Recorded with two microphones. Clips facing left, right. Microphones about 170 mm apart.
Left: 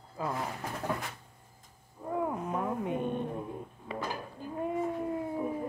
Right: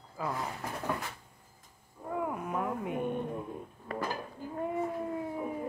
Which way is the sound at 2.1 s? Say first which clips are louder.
Left 1 dB; 25° left (ahead or behind).